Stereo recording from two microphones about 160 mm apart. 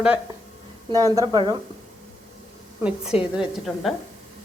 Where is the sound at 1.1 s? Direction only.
25° right (ahead or behind).